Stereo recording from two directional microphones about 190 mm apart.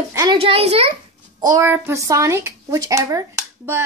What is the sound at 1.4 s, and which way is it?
Speech, 15° right (ahead or behind).